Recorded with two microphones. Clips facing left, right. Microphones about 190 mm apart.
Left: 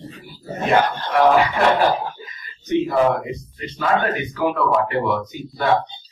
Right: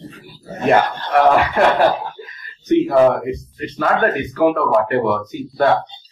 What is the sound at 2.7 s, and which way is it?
Speech, 55° right (ahead or behind).